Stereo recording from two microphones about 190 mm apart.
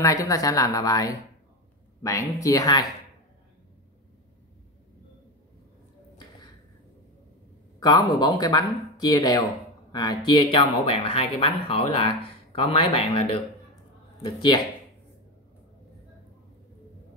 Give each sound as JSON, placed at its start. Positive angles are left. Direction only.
{"t": 0.0, "sound": "speech", "side_deg": 15}
{"t": 7.8, "sound": "speech", "side_deg": 20}
{"t": 10.5, "sound": "speech", "side_deg": 30}